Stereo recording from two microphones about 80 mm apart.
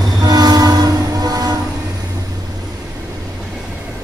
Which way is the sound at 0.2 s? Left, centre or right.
Right.